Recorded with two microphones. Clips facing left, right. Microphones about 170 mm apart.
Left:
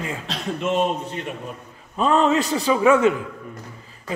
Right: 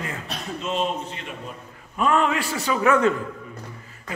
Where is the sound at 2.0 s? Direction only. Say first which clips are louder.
Left 3 dB; 30° left (ahead or behind).